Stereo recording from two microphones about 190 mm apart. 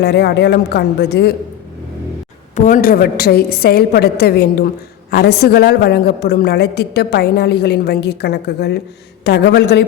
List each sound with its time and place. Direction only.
0.0 s a woman's voice: 60° left (ahead or behind)
2.6 s a woman's voice: 45° left (ahead or behind); by 9.8 s 65° left (ahead or behind)